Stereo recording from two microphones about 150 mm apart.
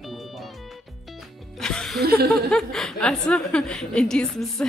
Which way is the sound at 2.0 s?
90° right.